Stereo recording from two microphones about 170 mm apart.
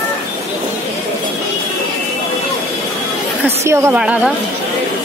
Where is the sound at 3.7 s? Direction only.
15° right (ahead or behind).